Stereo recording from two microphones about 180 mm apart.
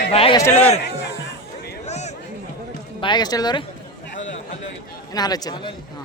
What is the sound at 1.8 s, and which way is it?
Chatter, 40° left (ahead or behind).